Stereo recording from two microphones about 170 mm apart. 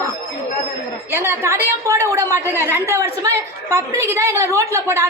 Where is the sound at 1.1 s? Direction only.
15° right (ahead or behind).